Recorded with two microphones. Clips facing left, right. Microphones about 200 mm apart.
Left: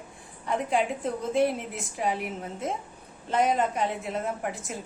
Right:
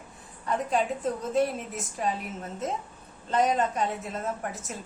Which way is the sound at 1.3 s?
10° left (ahead or behind).